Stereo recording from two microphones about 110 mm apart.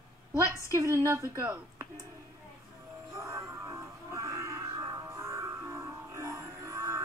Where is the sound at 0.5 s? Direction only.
25° right (ahead or behind).